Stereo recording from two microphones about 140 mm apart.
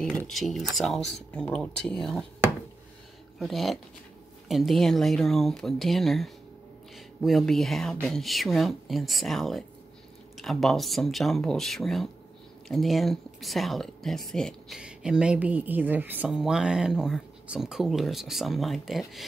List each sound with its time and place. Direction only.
0.3 s speech: centre (ahead or behind)
3.3 s speech: centre (ahead or behind)